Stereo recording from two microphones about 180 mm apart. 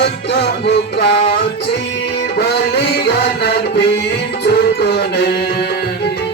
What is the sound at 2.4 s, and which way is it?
Music, 65° left (ahead or behind).